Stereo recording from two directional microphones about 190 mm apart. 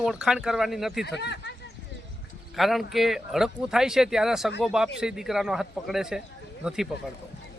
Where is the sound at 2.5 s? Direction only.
Centre (ahead or behind).